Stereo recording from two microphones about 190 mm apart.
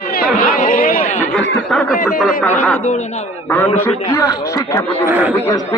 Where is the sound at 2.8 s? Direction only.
40° left (ahead or behind).